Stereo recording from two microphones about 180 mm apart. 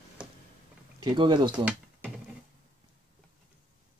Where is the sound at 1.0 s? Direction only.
25° right (ahead or behind).